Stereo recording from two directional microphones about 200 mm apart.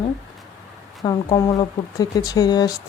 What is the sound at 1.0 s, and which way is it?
Speech, 20° left (ahead or behind).